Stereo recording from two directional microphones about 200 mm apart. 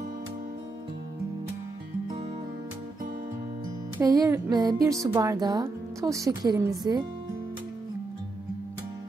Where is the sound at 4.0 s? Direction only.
15° right (ahead or behind).